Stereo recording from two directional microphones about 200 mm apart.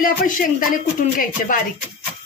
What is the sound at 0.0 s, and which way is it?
Speech, 45° left (ahead or behind).